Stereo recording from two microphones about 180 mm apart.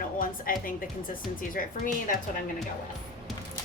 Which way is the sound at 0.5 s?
50° left (ahead or behind).